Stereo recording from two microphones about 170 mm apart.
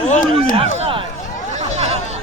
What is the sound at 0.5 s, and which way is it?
Speech, 35° right (ahead or behind).